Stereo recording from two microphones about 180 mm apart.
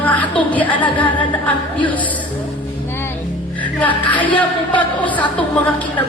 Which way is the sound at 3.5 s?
10° left (ahead or behind).